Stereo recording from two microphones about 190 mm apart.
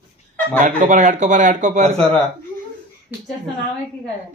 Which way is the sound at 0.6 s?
40° right (ahead or behind).